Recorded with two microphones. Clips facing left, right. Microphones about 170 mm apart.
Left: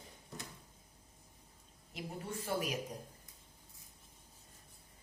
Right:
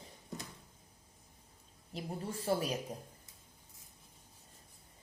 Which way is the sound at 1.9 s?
30° right (ahead or behind).